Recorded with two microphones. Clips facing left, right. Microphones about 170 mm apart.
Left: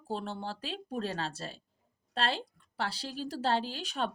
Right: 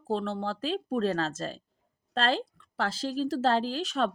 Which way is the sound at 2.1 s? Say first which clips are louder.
Right 5 dB; 40° right (ahead or behind).